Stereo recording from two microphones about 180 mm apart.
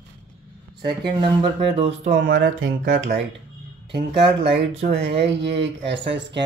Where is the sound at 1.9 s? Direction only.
90° right.